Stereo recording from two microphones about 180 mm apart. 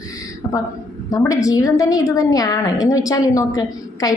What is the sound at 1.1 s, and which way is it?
A woman's voice, 20° left (ahead or behind).